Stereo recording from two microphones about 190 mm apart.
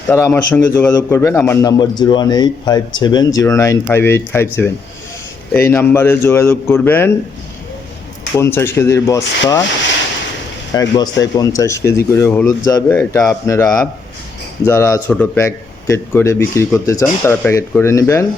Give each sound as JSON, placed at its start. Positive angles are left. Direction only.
{"t": 0.1, "sound": "a man's voice", "side_deg": 15}
{"t": 5.5, "sound": "a man's voice", "side_deg": 15}
{"t": 8.4, "sound": "a man's voice", "side_deg": 10}
{"t": 10.8, "sound": "a man's voice", "side_deg": 20}